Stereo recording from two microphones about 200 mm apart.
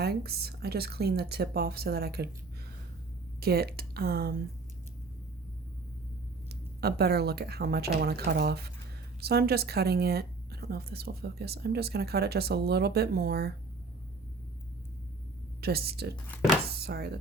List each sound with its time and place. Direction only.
0.0 s a woman's voice: 50° right (ahead or behind)
3.4 s a woman's voice: 50° right (ahead or behind)
6.8 s a woman's voice: 50° right (ahead or behind)
15.6 s a woman's voice: 50° right (ahead or behind)